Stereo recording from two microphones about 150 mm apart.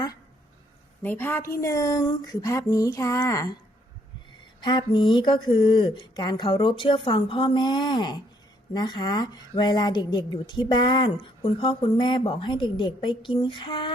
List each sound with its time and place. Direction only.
1.0 s speech: 15° left (ahead or behind)
4.6 s speech: 30° left (ahead or behind)